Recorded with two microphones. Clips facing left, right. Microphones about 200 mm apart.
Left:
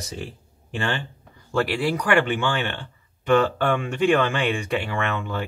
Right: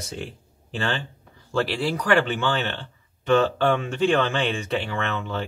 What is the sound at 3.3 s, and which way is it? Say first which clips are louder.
Speech: even; 55° left (ahead or behind).